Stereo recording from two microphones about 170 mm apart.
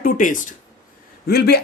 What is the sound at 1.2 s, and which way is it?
Speech, 70° left (ahead or behind).